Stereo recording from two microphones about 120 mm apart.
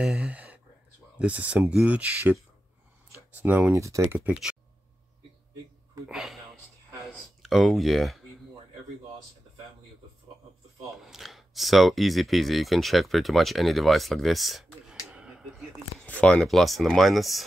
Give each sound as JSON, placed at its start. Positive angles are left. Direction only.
{"t": 0.0, "sound": "speech", "side_deg": -10}
{"t": 3.3, "sound": "speech", "side_deg": -15}
{"t": 6.0, "sound": "speech", "side_deg": -5}
{"t": 11.0, "sound": "speech", "side_deg": -5}